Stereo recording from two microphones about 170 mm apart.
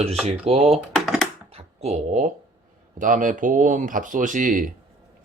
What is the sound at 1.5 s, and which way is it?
Speech, 40° right (ahead or behind).